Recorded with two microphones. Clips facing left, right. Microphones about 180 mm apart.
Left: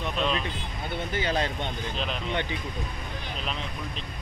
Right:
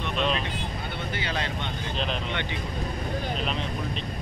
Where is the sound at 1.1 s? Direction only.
40° left (ahead or behind).